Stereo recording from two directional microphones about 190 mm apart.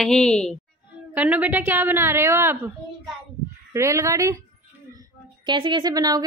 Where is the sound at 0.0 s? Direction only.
Centre (ahead or behind).